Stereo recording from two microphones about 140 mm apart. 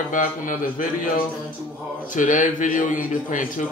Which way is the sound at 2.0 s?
65° left (ahead or behind).